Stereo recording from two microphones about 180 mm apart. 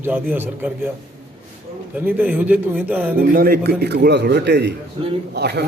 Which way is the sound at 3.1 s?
55° right (ahead or behind).